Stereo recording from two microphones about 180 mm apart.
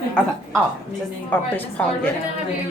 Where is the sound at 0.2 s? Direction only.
5° left (ahead or behind).